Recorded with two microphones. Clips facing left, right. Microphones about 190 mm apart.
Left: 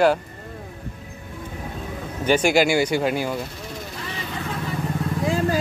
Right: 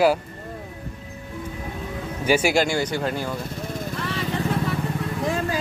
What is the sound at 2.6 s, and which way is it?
Speech, 10° left (ahead or behind).